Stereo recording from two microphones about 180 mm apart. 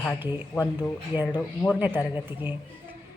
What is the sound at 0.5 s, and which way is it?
Speech, 20° left (ahead or behind).